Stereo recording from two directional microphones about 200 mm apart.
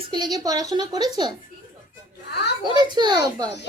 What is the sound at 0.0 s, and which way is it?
Speech, 20° right (ahead or behind).